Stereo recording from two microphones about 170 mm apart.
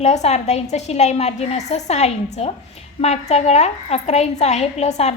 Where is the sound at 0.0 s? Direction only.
40° left (ahead or behind).